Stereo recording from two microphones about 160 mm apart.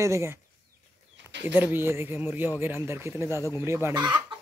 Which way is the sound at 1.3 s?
90° right.